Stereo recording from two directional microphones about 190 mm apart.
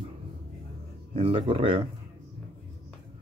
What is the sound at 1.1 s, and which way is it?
Speech, 30° right (ahead or behind).